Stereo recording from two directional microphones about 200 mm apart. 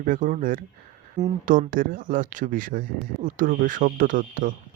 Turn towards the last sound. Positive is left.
turn(degrees=-45)  # may be behind; listen again after turning